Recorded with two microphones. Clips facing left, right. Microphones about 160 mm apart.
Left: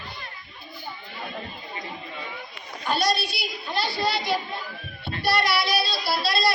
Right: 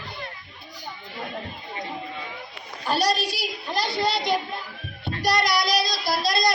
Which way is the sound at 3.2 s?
40° right (ahead or behind).